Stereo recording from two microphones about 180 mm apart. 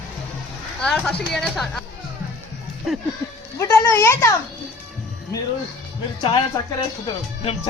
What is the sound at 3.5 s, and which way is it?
Speech, 15° left (ahead or behind).